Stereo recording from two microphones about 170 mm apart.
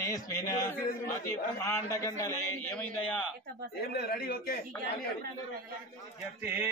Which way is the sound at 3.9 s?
70° left (ahead or behind).